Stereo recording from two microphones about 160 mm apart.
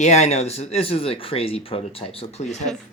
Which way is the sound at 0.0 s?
45° left (ahead or behind).